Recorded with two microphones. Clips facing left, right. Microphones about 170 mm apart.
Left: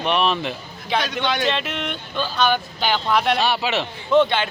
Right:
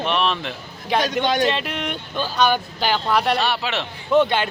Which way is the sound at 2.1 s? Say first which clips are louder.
Right 1 dB; 10° right (ahead or behind).